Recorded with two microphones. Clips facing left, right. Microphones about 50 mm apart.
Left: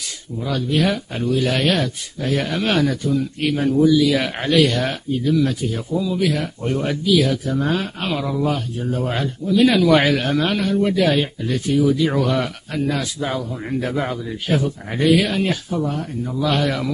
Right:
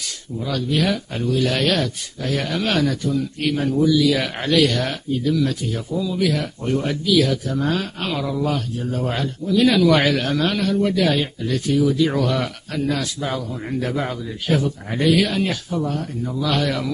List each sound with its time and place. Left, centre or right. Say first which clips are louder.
0.4 s a man's voice: left 1 dB; centre
0.7 s a man's voice: left 2 dB; centre